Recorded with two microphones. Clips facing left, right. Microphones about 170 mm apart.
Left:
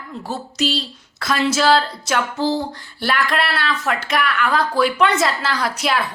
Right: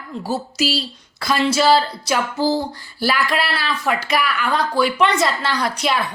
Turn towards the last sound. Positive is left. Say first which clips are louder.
# even
turn(degrees=0)  # may be behind; listen again after turning